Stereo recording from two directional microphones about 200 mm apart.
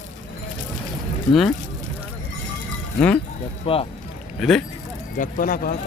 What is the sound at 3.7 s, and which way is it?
Speech, 30° left (ahead or behind).